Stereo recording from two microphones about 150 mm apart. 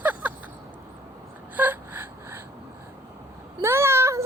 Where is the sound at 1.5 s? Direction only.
15° right (ahead or behind).